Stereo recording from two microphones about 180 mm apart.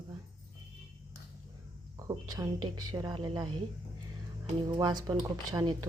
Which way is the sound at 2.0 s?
20° right (ahead or behind).